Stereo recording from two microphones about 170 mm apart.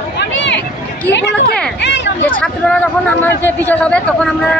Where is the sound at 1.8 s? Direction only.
90° left.